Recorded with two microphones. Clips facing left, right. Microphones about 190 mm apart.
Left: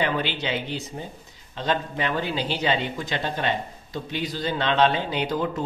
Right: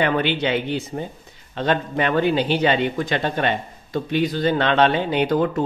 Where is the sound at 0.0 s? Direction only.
60° right (ahead or behind).